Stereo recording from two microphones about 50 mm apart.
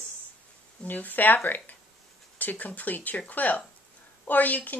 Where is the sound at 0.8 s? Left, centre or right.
Left.